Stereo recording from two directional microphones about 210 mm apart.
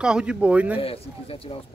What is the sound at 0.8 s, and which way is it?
Speech, 25° left (ahead or behind).